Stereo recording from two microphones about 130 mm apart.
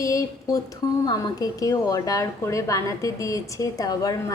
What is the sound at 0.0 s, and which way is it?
A woman's voice, 25° left (ahead or behind).